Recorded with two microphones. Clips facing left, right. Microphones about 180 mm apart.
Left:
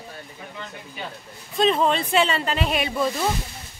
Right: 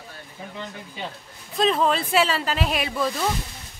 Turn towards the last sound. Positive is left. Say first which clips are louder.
# left 1 dB
turn(degrees=0)  # may be behind; listen again after turning